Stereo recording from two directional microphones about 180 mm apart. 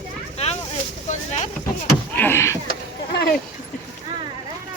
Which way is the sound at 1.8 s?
15° left (ahead or behind).